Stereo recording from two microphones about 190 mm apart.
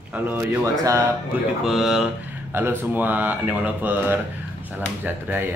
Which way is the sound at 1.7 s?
Centre (ahead or behind).